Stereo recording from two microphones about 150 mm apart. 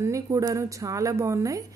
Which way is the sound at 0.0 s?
20° right (ahead or behind).